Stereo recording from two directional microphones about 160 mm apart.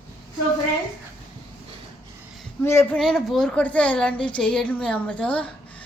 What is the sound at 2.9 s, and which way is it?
A woman's voice, centre (ahead or behind).